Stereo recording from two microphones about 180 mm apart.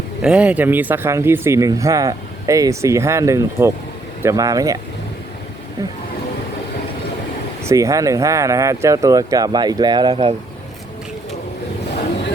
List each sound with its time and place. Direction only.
0.2 s speech: 5° right (ahead or behind)
7.6 s speech: 15° right (ahead or behind)